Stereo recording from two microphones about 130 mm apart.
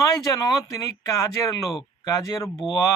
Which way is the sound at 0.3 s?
30° left (ahead or behind).